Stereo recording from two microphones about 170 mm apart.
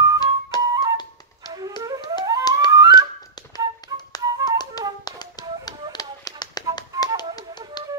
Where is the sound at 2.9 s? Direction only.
25° left (ahead or behind).